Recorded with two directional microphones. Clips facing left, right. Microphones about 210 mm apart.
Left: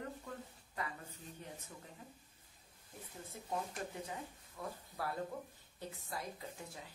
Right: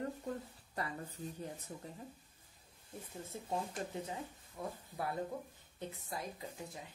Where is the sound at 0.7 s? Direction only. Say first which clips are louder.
Right 3 dB; 35° right (ahead or behind).